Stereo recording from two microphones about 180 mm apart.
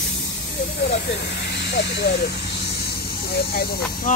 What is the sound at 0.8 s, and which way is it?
Speech, 70° left (ahead or behind).